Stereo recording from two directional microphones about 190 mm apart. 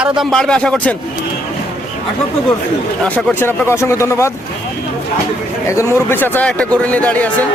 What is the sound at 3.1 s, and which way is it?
A man's voice, 15° left (ahead or behind).